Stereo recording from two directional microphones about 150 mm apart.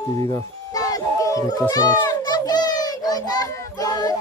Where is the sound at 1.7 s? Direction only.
25° left (ahead or behind).